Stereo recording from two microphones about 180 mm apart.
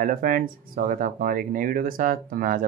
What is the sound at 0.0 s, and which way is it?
Speech, 50° right (ahead or behind).